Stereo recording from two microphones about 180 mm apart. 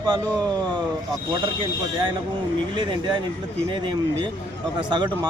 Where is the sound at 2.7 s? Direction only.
25° right (ahead or behind).